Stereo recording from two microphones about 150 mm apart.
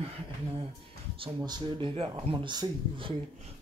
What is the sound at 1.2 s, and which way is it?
Speech, 30° right (ahead or behind).